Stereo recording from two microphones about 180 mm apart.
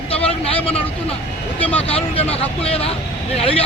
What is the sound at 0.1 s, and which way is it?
Vehicle, 30° left (ahead or behind).